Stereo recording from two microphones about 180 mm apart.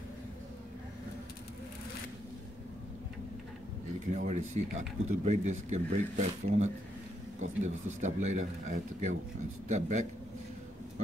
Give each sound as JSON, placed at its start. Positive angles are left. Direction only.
{"t": 4.1, "sound": "speech", "side_deg": -45}